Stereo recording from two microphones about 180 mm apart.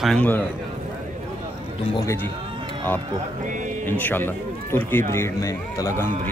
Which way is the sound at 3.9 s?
10° left (ahead or behind).